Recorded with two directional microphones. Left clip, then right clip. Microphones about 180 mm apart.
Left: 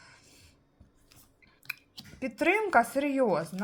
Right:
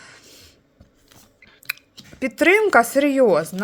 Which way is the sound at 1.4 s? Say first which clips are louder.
Right 10 dB; 35° right (ahead or behind).